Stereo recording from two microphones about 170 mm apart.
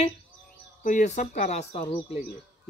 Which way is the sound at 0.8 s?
50° left (ahead or behind).